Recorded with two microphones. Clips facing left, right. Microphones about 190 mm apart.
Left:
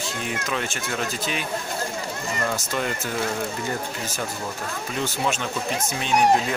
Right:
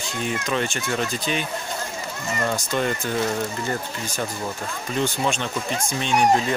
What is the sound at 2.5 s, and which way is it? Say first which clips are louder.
Speech: right 4 dB; 5° left (ahead or behind).